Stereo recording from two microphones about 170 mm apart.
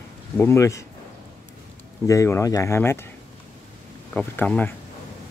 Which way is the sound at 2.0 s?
20° left (ahead or behind).